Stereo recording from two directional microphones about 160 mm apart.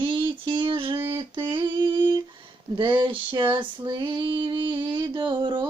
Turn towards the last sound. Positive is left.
turn(degrees=-30)  # may be behind; listen again after turning